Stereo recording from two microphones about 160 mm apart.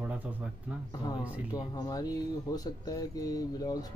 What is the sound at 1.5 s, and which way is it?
Speech, 25° left (ahead or behind).